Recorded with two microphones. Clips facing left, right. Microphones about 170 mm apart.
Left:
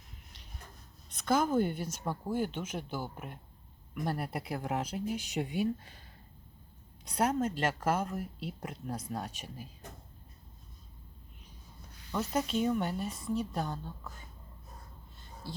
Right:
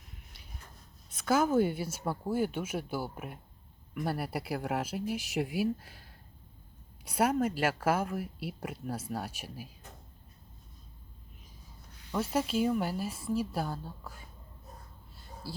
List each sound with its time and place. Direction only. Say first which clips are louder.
1.2 s a woman's voice: right 2 dB; 5° right (ahead or behind)
12.1 s a woman's voice: right 2 dB; 5° right (ahead or behind)
15.4 s speech: right 2 dB; 5° right (ahead or behind)